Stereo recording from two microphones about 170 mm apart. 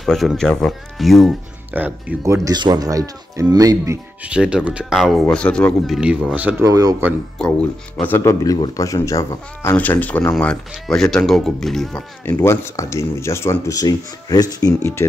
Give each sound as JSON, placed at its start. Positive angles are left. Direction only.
{"t": 0.0, "sound": "speech", "side_deg": 0}
{"t": 1.7, "sound": "speech", "side_deg": -10}
{"t": 4.3, "sound": "speech", "side_deg": -5}
{"t": 5.9, "sound": "speech", "side_deg": -5}
{"t": 6.7, "sound": "speech", "side_deg": -20}
{"t": 7.4, "sound": "speech", "side_deg": 5}
{"t": 8.0, "sound": "speech", "side_deg": 15}
{"t": 12.3, "sound": "speech", "side_deg": 15}